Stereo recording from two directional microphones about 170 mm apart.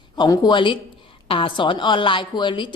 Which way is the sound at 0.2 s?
25° left (ahead or behind).